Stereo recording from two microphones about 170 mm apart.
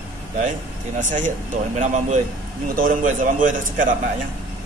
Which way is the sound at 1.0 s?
45° right (ahead or behind).